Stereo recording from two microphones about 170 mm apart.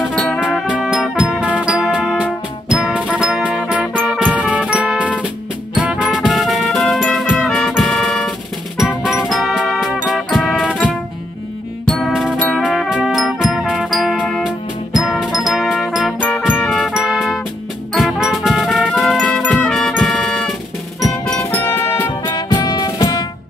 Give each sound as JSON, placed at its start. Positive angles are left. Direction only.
{"t": 0.0, "sound": "music", "side_deg": 0}
{"t": 11.9, "sound": "music", "side_deg": 0}
{"t": 16.2, "sound": "music", "side_deg": 10}